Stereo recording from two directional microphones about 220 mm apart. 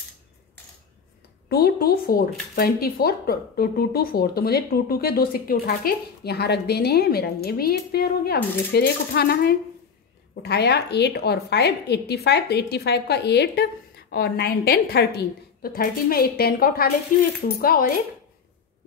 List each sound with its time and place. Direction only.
1.5 s speech: 45° left (ahead or behind)